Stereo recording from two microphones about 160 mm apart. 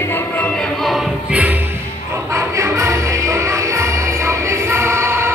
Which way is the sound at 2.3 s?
20° right (ahead or behind).